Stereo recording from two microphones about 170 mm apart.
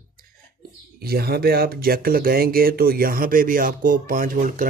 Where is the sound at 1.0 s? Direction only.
65° right (ahead or behind).